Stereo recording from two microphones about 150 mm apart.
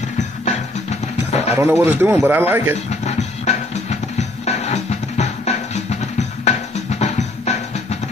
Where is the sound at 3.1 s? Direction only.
50° left (ahead or behind).